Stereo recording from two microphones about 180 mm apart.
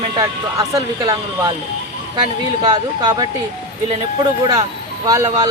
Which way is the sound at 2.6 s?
25° right (ahead or behind).